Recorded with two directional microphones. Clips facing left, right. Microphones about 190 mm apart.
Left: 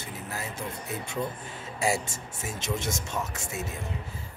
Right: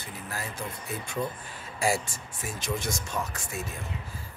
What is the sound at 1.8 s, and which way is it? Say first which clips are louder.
Speech: even; 20° left (ahead or behind).